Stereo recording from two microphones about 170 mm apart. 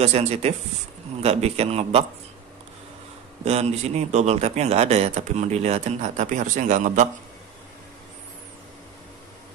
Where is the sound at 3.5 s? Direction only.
40° right (ahead or behind).